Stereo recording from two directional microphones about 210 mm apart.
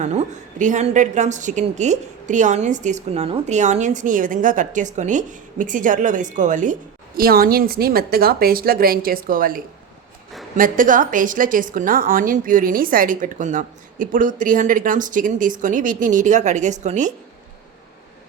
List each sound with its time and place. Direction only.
0.0 s a woman's voice: 35° right (ahead or behind)
10.6 s a woman's voice: 40° right (ahead or behind)